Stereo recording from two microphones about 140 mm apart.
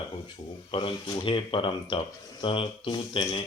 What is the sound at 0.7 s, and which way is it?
Speech, 40° left (ahead or behind).